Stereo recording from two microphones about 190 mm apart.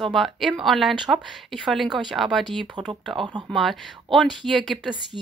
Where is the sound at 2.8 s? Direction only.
25° right (ahead or behind).